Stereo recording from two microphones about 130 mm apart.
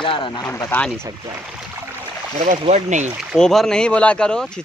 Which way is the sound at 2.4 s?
60° right (ahead or behind).